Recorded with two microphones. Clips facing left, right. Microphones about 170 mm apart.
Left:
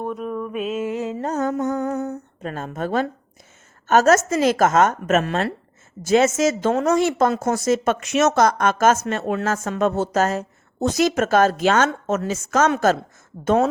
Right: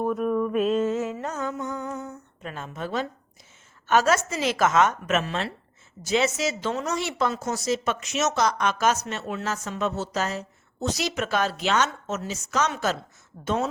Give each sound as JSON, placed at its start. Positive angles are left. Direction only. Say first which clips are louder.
{"t": 0.0, "sound": "mantra", "louder": "right 3 dB", "side_deg": 0}
{"t": 0.9, "sound": "music", "louder": "left 1 dB", "side_deg": 15}
{"t": 1.2, "sound": "a sound", "louder": "left 8 dB", "side_deg": 40}
{"t": 3.8, "sound": "a woman's voice", "louder": "left 6 dB", "side_deg": 45}